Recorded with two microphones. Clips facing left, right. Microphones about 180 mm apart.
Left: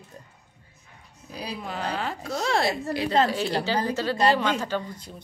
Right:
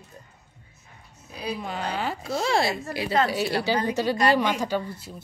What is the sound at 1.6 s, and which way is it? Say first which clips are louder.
A woman's voice: left 1 dB; centre (ahead or behind).